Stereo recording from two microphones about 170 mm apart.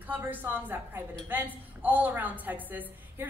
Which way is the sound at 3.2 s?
10° right (ahead or behind).